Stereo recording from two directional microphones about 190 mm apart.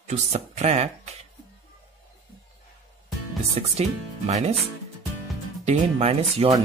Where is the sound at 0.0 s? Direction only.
35° right (ahead or behind).